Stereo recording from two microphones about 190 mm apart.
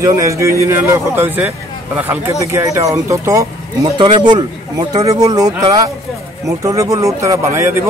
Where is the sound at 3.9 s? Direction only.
30° right (ahead or behind).